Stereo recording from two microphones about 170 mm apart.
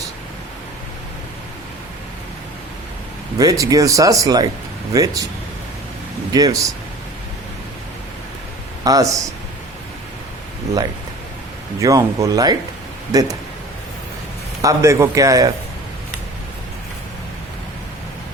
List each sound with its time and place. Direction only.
3.3 s speech: 20° right (ahead or behind)
6.3 s speech: 20° right (ahead or behind)
8.8 s speech: 20° right (ahead or behind)
11.8 s speech: 20° right (ahead or behind)
14.6 s speech: 20° right (ahead or behind)